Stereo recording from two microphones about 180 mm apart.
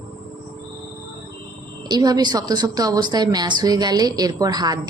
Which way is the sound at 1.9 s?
20° right (ahead or behind).